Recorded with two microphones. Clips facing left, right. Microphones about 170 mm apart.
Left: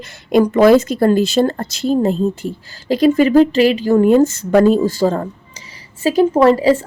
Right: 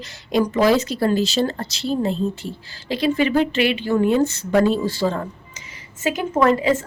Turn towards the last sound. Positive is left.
turn(degrees=35)  # may be behind; listen again after turning